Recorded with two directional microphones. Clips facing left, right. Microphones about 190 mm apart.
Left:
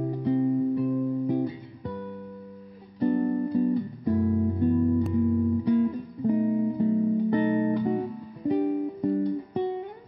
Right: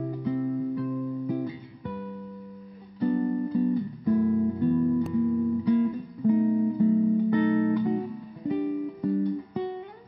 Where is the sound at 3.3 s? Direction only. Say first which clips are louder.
Left 1 dB; 35° left (ahead or behind).